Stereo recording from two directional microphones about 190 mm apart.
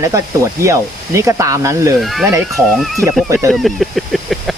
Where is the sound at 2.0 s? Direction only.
Centre (ahead or behind).